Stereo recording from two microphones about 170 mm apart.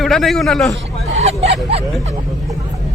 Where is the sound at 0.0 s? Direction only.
Centre (ahead or behind).